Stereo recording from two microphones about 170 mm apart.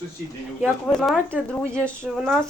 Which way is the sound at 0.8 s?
5° left (ahead or behind).